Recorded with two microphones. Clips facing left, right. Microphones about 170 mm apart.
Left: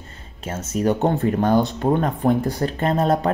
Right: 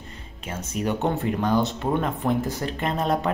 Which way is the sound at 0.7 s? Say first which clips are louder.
Left 5 dB; 40° left (ahead or behind).